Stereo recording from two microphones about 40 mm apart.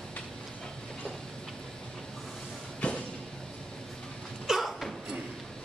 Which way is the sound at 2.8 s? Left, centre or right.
Left.